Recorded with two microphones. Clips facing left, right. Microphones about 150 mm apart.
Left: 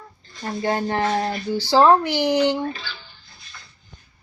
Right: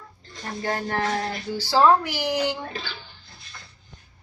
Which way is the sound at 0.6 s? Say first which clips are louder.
Left 4 dB; 25° left (ahead or behind).